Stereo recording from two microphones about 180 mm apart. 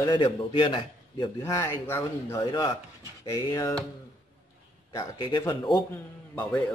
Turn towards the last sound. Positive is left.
turn(degrees=10)  # may be behind; listen again after turning